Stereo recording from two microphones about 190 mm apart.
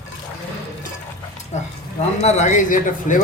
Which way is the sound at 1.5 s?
40° left (ahead or behind).